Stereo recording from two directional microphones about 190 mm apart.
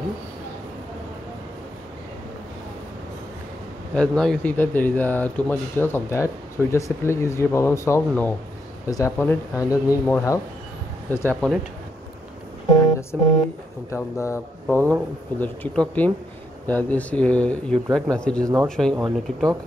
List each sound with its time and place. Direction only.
3.9 s speech: 5° left (ahead or behind)
12.7 s speech: 15° left (ahead or behind); by 19.5 s centre (ahead or behind)